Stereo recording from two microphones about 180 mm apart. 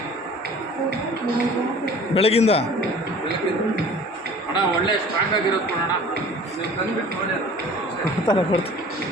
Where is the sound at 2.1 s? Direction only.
35° left (ahead or behind).